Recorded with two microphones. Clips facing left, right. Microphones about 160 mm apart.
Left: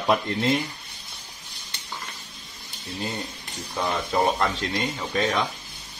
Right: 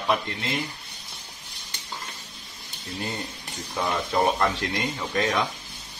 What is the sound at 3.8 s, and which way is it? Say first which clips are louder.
Speech: even; centre (ahead or behind).